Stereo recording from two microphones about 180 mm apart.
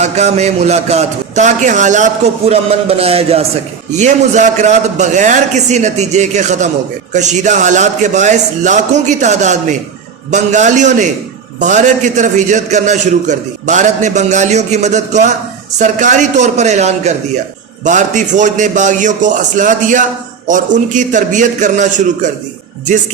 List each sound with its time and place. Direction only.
0.0 s a man's voice: 40° right (ahead or behind)